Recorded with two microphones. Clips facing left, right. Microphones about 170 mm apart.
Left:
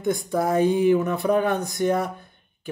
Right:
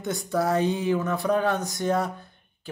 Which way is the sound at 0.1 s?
15° left (ahead or behind).